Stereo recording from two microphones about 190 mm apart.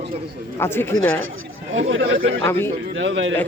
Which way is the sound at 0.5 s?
10° left (ahead or behind).